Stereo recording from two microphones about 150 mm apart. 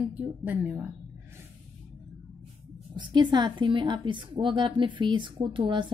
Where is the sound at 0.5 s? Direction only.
10° right (ahead or behind).